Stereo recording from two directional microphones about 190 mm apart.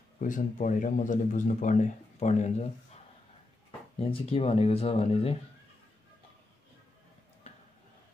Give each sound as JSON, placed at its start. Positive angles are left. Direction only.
{"t": 0.2, "sound": "speech", "side_deg": 40}
{"t": 4.0, "sound": "speech", "side_deg": 30}